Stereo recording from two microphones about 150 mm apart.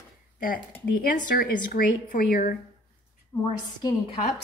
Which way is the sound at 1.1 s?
65° left (ahead or behind).